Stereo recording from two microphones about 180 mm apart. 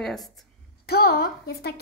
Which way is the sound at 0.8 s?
60° left (ahead or behind).